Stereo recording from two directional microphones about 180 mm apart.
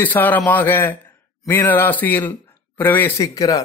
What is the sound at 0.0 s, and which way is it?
A man's voice, 10° left (ahead or behind).